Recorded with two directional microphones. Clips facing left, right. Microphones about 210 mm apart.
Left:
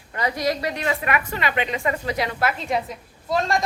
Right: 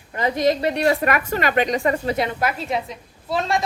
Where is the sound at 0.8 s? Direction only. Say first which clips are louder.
Right 5 dB; 40° right (ahead or behind).